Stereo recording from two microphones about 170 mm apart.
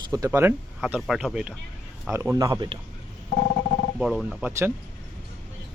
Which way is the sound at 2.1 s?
15° right (ahead or behind).